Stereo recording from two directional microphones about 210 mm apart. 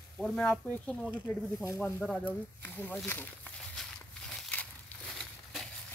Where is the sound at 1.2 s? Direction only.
15° left (ahead or behind).